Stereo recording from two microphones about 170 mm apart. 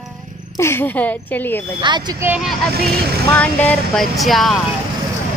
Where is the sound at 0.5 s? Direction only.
15° left (ahead or behind).